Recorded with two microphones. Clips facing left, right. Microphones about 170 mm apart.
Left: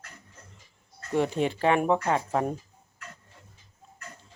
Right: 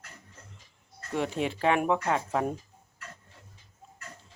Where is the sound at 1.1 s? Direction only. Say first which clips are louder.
Left 4 dB; centre (ahead or behind).